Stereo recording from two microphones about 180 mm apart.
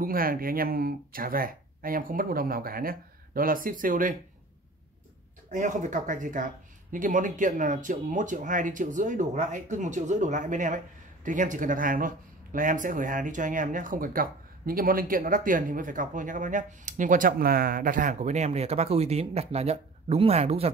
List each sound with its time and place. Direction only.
0.0 s speech: 55° right (ahead or behind)
5.5 s speech: 45° right (ahead or behind)